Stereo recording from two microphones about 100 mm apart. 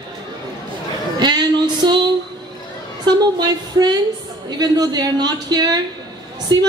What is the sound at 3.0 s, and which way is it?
A woman's voice, 45° right (ahead or behind).